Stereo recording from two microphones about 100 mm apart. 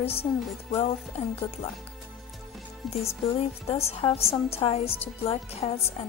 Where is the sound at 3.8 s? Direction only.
90° left.